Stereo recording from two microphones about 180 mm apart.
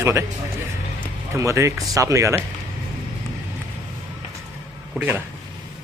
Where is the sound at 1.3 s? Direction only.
15° right (ahead or behind).